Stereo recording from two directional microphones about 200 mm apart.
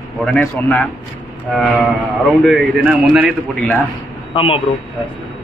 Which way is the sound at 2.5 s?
Centre (ahead or behind).